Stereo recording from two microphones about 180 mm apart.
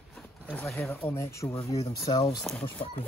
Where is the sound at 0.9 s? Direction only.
15° left (ahead or behind).